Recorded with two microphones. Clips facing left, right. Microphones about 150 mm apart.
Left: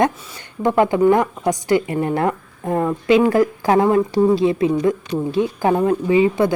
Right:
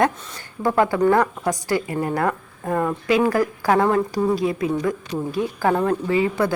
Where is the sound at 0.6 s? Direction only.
20° left (ahead or behind).